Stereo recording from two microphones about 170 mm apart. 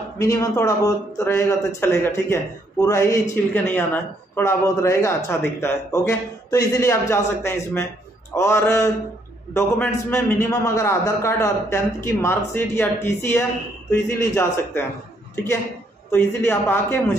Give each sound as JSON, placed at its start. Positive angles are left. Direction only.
{"t": 0.2, "sound": "a man's voice", "side_deg": 20}
{"t": 16.1, "sound": "a man's voice", "side_deg": 15}